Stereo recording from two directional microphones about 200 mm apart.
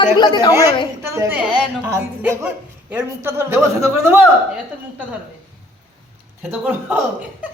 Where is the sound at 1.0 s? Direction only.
15° right (ahead or behind).